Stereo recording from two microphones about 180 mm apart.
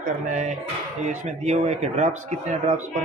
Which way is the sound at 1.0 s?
45° right (ahead or behind).